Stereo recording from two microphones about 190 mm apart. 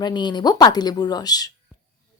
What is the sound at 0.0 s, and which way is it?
A woman's voice, 25° left (ahead or behind).